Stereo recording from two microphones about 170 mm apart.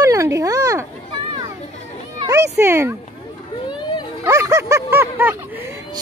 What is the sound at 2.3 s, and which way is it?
Meow, 15° right (ahead or behind).